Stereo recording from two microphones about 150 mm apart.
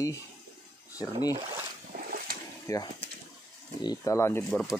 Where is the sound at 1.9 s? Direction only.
70° right (ahead or behind).